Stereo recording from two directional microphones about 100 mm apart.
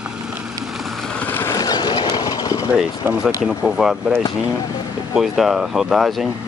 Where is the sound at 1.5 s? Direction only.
45° left (ahead or behind).